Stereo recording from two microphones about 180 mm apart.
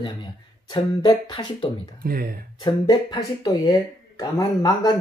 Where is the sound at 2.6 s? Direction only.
25° left (ahead or behind).